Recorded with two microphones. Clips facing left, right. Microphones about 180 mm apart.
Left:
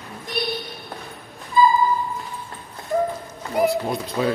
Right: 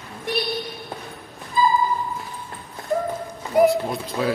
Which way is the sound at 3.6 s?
Centre (ahead or behind).